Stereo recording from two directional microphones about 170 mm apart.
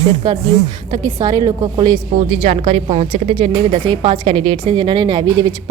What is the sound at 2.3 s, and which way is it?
A woman's voice, 35° right (ahead or behind).